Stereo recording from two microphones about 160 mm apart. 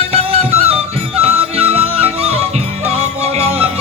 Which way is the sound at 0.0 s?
40° right (ahead or behind).